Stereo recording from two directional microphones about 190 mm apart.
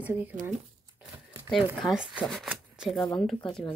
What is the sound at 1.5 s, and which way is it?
Speech, centre (ahead or behind).